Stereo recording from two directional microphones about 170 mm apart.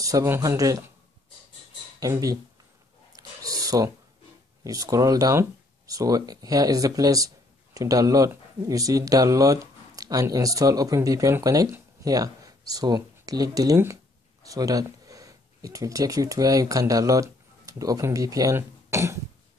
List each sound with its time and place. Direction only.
0.0 s speech: 20° right (ahead or behind)
2.0 s speech: 20° right (ahead or behind)
3.2 s a sound: 20° right (ahead or behind)
4.6 s speech: 20° right (ahead or behind)